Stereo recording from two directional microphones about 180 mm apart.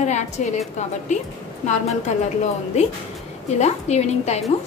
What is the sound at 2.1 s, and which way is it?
Speech, 40° left (ahead or behind).